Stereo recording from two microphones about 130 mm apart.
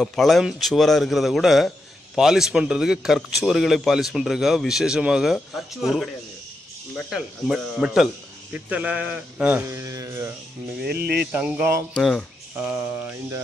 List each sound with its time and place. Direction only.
0.0 s speech: 5° left (ahead or behind)
7.1 s a man's voice: 5° right (ahead or behind)
9.7 s speech: 25° right (ahead or behind)
11.3 s a man's voice: 10° right (ahead or behind)
11.9 s speech: 5° left (ahead or behind)
12.5 s a man's voice: 20° right (ahead or behind)